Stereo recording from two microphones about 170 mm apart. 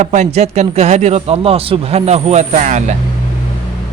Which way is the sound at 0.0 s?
45° right (ahead or behind).